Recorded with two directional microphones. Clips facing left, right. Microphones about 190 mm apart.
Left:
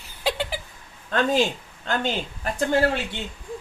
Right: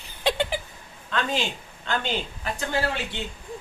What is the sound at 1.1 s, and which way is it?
Speech, 45° left (ahead or behind).